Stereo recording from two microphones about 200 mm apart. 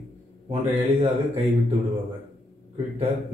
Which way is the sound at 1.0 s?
30° right (ahead or behind).